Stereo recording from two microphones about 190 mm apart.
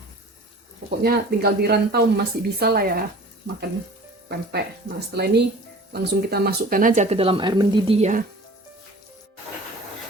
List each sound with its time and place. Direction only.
0.9 s speech: 55° right (ahead or behind)
4.3 s speech: 60° right (ahead or behind); by 8.2 s 35° right (ahead or behind)